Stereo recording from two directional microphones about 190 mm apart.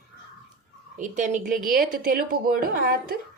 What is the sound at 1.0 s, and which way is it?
A woman's voice, 40° right (ahead or behind).